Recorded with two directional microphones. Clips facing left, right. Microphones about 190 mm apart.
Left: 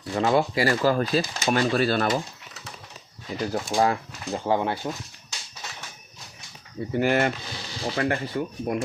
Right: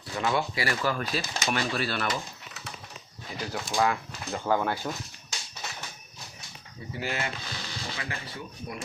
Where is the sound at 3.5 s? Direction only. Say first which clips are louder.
Left 3 dB; 35° left (ahead or behind).